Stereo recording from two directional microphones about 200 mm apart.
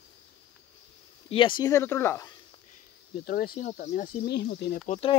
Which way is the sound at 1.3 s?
25° left (ahead or behind).